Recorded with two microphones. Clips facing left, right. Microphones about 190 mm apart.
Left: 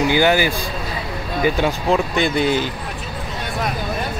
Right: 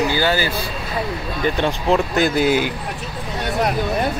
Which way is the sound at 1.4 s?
5° left (ahead or behind).